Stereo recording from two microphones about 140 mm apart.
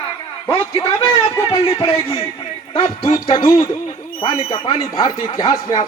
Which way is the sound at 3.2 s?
35° left (ahead or behind).